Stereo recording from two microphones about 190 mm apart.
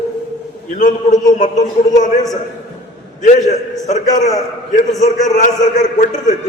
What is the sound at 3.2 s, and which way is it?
A man's voice, 40° left (ahead or behind).